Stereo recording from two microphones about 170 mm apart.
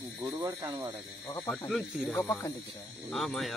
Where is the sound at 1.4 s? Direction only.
5° left (ahead or behind).